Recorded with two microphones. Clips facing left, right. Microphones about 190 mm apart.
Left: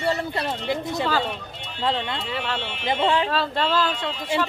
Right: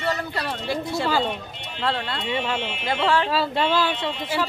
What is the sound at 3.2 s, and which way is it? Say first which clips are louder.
Speech: right 1 dB; 10° right (ahead or behind).